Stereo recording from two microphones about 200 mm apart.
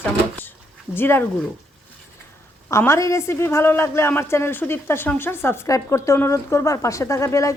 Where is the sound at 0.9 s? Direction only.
10° left (ahead or behind).